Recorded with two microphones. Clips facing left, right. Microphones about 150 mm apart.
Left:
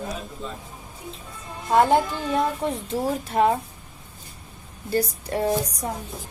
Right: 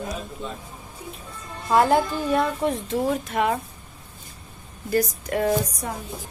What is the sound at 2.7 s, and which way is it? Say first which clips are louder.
Speech: right 2 dB; 35° left (ahead or behind).